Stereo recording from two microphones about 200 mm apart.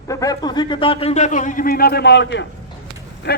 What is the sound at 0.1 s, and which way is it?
A man's voice, 15° left (ahead or behind).